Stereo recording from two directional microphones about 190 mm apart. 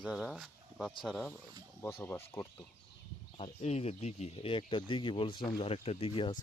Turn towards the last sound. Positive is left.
turn(degrees=30)  # may be behind; listen again after turning